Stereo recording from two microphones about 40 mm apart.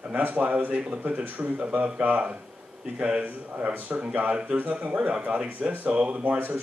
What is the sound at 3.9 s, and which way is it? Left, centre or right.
A man's voice, right.